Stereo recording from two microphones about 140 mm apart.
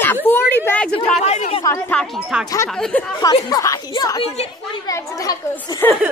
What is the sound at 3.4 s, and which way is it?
Speech, 25° left (ahead or behind).